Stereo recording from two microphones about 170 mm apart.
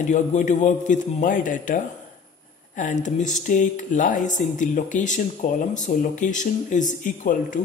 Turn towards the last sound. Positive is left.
turn(degrees=50)  # may be behind; listen again after turning